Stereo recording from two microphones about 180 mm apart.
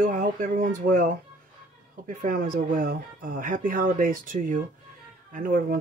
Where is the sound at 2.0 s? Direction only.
50° right (ahead or behind).